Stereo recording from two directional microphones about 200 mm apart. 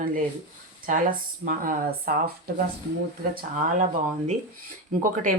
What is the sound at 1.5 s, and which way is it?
Speech, 45° right (ahead or behind).